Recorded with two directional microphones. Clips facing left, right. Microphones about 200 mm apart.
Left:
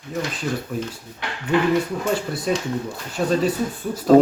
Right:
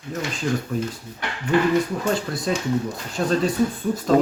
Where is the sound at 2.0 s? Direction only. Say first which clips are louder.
Even; 5° left (ahead or behind).